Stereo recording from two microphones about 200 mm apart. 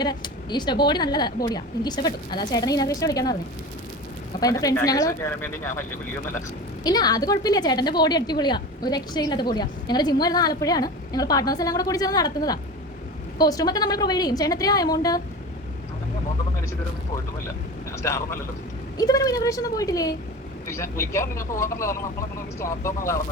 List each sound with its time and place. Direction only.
0.0 s a woman's voice: 20° left (ahead or behind)
4.4 s speech: 20° left (ahead or behind)
6.8 s a woman's voice: 20° left (ahead or behind)
18.0 s speech: 15° left (ahead or behind)